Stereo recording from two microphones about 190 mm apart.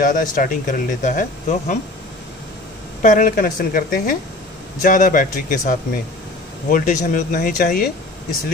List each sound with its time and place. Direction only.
0.0 s speech: 45° left (ahead or behind)
3.0 s speech: 40° left (ahead or behind)